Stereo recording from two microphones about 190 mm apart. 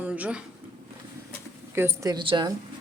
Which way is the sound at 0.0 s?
5° right (ahead or behind).